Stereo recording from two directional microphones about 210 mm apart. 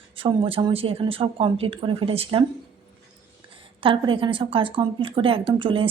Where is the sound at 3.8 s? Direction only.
25° right (ahead or behind).